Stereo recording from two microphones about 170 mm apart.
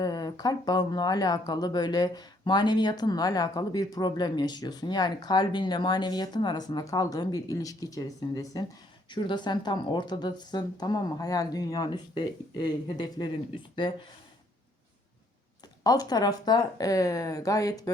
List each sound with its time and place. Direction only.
0.0 s speech: 25° left (ahead or behind)
15.8 s speech: 25° left (ahead or behind)